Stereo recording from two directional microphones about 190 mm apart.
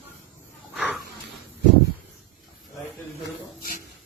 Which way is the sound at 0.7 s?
5° right (ahead or behind).